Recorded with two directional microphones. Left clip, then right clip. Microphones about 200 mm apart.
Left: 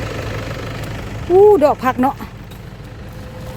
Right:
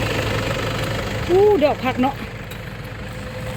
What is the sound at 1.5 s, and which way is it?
Speech, 20° left (ahead or behind).